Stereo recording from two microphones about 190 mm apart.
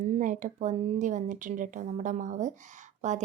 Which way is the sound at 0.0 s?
40° right (ahead or behind).